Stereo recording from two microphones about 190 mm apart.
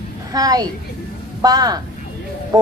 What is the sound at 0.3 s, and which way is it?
A child's voice, 20° right (ahead or behind).